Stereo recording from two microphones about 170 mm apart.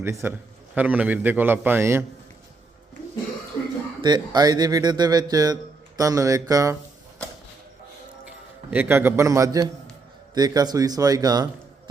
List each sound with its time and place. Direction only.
0.0 s a man's voice: 15° right (ahead or behind)
4.0 s speech: 25° right (ahead or behind)
8.7 s a man's voice: 10° right (ahead or behind)